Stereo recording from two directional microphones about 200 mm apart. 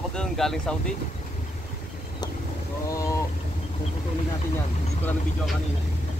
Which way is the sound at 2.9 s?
15° left (ahead or behind).